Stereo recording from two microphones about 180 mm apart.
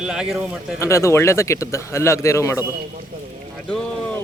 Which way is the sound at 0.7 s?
15° left (ahead or behind).